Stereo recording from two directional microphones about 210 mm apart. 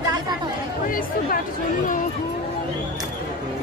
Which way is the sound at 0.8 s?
40° left (ahead or behind).